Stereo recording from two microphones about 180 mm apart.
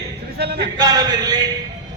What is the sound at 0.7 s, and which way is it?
Speech, 20° right (ahead or behind).